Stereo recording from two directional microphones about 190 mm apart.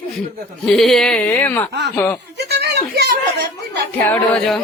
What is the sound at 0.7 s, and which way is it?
Speech, centre (ahead or behind).